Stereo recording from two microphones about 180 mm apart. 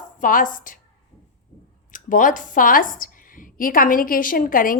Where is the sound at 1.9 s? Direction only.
45° left (ahead or behind).